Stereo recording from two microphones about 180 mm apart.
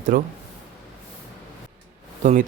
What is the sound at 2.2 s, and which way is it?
Speech, 45° right (ahead or behind).